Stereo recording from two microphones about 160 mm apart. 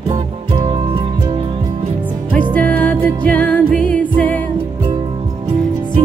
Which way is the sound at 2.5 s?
10° left (ahead or behind).